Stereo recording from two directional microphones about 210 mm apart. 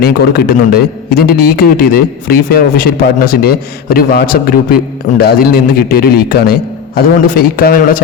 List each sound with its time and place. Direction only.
0.0 s a man's voice: 45° left (ahead or behind)